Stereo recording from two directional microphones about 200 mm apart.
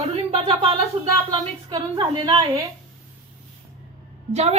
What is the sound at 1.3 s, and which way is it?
A woman's voice, 25° right (ahead or behind).